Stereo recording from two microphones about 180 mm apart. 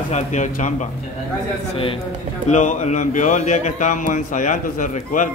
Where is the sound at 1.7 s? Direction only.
30° left (ahead or behind).